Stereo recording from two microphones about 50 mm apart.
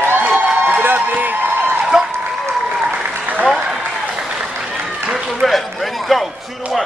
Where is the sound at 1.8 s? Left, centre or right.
Centre.